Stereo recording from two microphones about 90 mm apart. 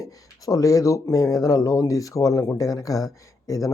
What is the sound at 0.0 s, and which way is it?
Speech, 40° left (ahead or behind).